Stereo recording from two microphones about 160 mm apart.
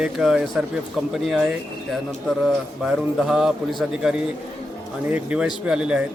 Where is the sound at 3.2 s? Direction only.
Centre (ahead or behind).